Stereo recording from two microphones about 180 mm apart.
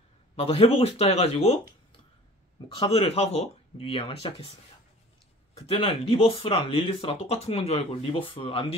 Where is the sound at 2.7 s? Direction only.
35° left (ahead or behind).